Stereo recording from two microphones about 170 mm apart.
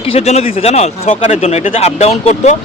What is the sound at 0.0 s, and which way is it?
Speech, 35° left (ahead or behind).